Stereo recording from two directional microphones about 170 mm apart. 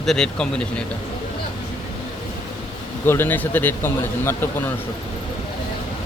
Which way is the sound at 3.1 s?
10° left (ahead or behind).